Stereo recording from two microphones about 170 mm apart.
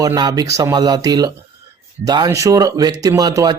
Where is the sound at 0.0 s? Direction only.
20° right (ahead or behind).